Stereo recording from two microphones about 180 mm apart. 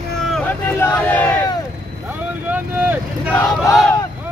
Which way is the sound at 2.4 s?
10° right (ahead or behind).